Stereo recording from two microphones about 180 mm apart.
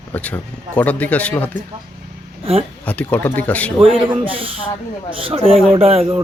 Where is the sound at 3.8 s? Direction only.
30° right (ahead or behind).